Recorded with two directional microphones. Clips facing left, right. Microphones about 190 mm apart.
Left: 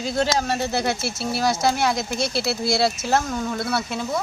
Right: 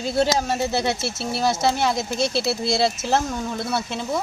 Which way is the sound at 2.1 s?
25° right (ahead or behind).